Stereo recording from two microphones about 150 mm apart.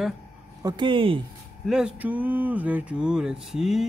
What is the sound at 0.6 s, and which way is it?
Speech, 30° right (ahead or behind).